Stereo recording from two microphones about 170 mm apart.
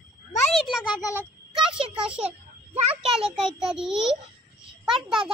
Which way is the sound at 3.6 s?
5° right (ahead or behind).